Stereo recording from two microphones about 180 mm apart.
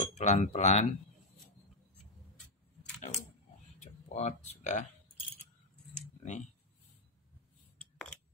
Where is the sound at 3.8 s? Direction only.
40° left (ahead or behind).